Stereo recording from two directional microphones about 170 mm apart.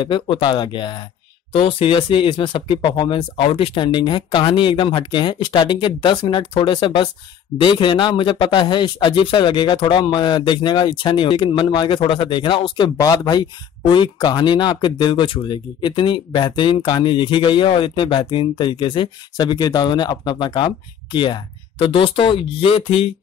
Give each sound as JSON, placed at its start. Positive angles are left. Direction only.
{"t": 0.0, "sound": "speech", "side_deg": 30}